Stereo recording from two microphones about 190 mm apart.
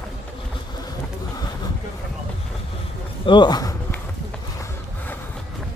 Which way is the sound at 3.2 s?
25° left (ahead or behind).